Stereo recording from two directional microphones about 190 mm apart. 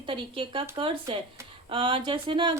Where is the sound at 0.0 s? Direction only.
25° right (ahead or behind).